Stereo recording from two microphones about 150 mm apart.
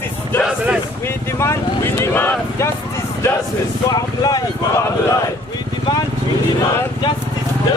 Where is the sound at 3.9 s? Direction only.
25° left (ahead or behind).